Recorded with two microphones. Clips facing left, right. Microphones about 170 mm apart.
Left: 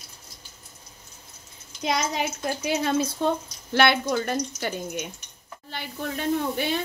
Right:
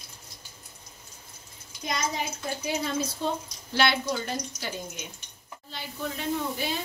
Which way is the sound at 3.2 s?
60° left (ahead or behind).